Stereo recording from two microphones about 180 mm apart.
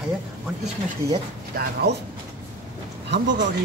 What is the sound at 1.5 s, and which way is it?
Speech, 55° right (ahead or behind).